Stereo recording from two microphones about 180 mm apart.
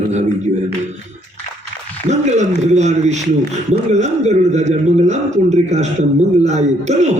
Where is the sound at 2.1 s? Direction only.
40° right (ahead or behind).